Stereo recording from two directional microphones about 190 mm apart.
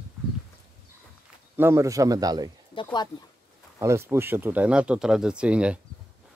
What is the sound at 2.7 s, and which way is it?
Speech, 25° left (ahead or behind).